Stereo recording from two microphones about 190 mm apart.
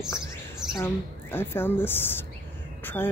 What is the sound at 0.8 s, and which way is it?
Speech, 10° left (ahead or behind).